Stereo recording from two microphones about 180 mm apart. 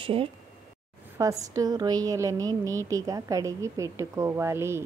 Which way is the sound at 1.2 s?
20° right (ahead or behind).